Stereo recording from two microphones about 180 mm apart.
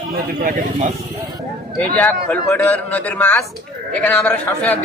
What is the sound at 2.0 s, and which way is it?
A man's voice, 10° left (ahead or behind).